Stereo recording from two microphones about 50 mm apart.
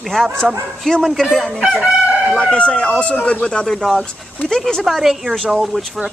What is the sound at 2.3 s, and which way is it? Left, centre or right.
A man's voice, centre.